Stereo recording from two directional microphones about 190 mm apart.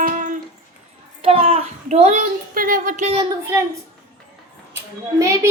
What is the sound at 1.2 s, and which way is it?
A child's voice, 30° right (ahead or behind).